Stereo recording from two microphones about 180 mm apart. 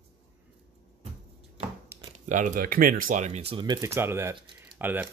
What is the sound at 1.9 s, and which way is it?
Speech, 40° right (ahead or behind).